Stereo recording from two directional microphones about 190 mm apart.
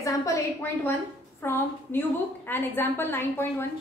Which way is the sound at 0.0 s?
15° left (ahead or behind).